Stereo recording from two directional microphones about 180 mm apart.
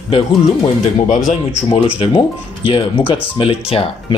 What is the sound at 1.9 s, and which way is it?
Speech, 30° left (ahead or behind).